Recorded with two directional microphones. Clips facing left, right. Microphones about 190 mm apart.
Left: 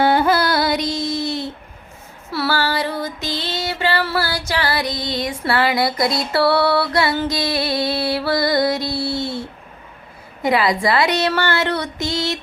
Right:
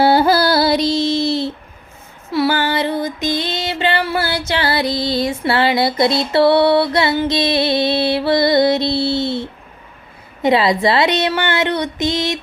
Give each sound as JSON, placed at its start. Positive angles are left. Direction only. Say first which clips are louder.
{"t": 0.0, "sound": "music", "louder": "right 3 dB", "side_deg": -35}
{"t": 2.3, "sound": "female singing", "louder": "right 4 dB", "side_deg": -20}
{"t": 10.4, "sound": "speech", "louder": "right 3 dB", "side_deg": -25}